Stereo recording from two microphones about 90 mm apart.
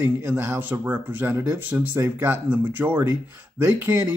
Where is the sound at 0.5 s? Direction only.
20° right (ahead or behind).